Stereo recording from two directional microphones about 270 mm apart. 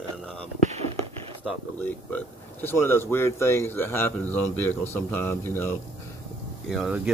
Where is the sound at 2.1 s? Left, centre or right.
Centre.